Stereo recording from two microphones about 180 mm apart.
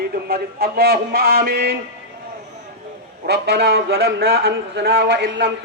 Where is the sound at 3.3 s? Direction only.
65° right (ahead or behind).